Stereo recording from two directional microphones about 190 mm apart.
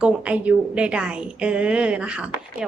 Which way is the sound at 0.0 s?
5° right (ahead or behind).